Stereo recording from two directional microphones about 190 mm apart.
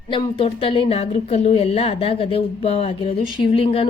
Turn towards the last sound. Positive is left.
turn(degrees=30)  # may be behind; listen again after turning